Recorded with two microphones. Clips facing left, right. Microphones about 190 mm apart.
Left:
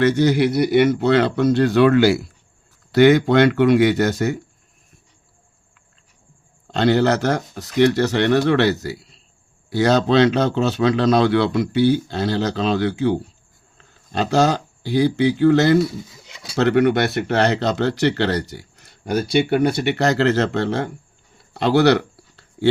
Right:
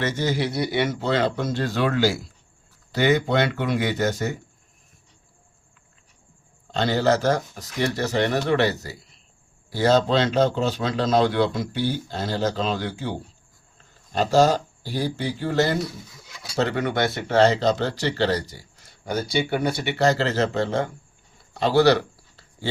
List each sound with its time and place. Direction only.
0.2 s a man's voice: 65° left (ahead or behind)
2.9 s a man's voice: 85° left
6.7 s a man's voice: 65° left (ahead or behind)